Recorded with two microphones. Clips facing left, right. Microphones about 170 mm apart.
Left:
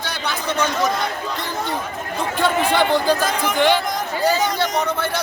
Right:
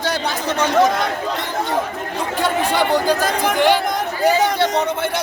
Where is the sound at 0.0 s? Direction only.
40° right (ahead or behind).